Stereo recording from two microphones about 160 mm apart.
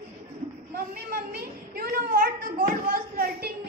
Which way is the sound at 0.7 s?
70° right (ahead or behind).